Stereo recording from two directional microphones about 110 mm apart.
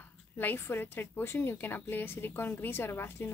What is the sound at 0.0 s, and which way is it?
A woman's voice, 15° left (ahead or behind).